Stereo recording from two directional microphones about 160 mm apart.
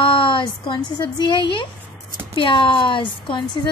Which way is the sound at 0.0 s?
30° left (ahead or behind).